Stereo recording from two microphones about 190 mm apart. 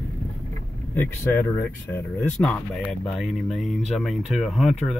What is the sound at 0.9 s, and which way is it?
Speech, 10° left (ahead or behind).